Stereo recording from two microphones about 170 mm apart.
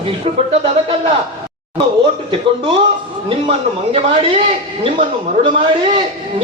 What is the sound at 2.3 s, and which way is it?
Speech, 30° right (ahead or behind).